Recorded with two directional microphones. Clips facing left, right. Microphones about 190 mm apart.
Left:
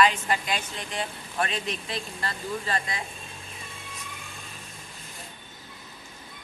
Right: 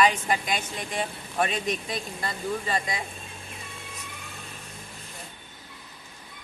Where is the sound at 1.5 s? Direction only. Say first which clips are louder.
Right 3 dB; 45° right (ahead or behind).